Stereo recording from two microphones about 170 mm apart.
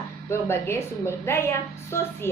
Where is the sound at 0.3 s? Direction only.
15° left (ahead or behind).